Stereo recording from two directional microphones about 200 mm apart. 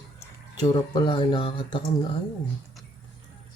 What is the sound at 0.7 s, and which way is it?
Speech, 20° left (ahead or behind).